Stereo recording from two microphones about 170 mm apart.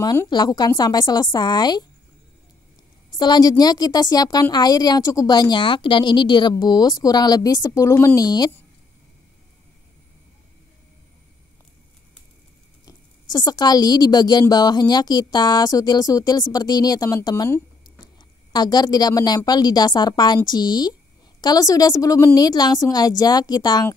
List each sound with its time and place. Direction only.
0.0 s a woman's voice: 20° left (ahead or behind)
3.2 s a woman's voice: 25° left (ahead or behind)
12.8 s a woman's voice: 25° left (ahead or behind)